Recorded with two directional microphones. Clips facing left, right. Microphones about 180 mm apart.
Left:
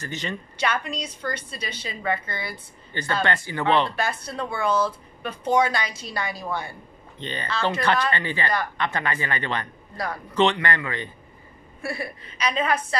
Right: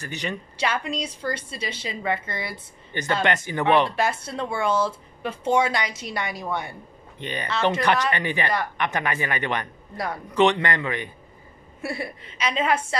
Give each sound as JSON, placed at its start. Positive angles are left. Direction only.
{"t": 0.0, "sound": "speech", "side_deg": -15}
{"t": 0.6, "sound": "speech", "side_deg": -30}
{"t": 7.4, "sound": "speech", "side_deg": -25}